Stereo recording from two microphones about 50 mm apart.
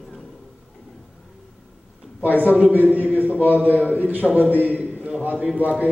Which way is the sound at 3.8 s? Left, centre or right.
Right.